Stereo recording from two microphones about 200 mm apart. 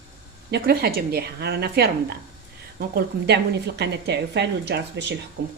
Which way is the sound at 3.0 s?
55° right (ahead or behind).